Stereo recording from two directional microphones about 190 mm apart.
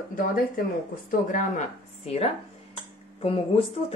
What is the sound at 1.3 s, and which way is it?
Speech, 40° left (ahead or behind).